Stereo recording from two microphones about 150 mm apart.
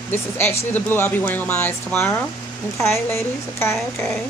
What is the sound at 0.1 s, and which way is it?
Speech, 15° left (ahead or behind).